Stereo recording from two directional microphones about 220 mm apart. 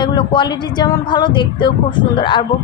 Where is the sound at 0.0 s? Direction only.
20° left (ahead or behind).